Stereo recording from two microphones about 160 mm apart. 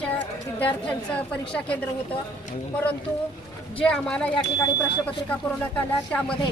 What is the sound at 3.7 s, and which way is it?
Speech, 5° left (ahead or behind).